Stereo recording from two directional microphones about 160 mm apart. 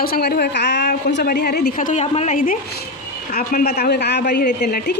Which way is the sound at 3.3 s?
70° left (ahead or behind).